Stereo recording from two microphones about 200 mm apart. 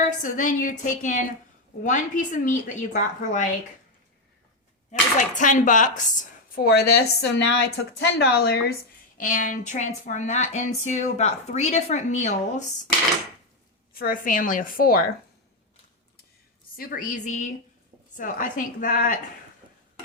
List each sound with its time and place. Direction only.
0.0 s a woman's voice: 40° left (ahead or behind)
4.9 s speech: 40° left (ahead or behind); by 8.5 s 60° left (ahead or behind)
9.1 s a woman's voice: 40° left (ahead or behind)
13.9 s speech: 45° left (ahead or behind)
16.7 s a woman's voice: 45° left (ahead or behind)